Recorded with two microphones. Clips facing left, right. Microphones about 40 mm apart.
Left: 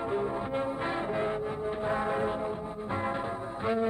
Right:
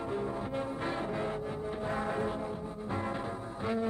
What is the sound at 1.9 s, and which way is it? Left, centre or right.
Music, centre.